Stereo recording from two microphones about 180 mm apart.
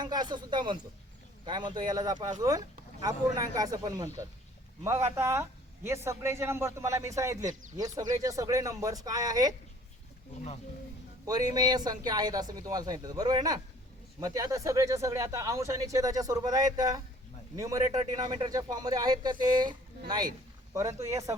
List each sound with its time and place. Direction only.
0.0 s a woman's voice: 25° right (ahead or behind)
11.3 s a woman's voice: 20° right (ahead or behind)